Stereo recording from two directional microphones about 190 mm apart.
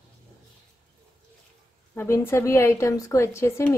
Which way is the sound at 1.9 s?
15° left (ahead or behind).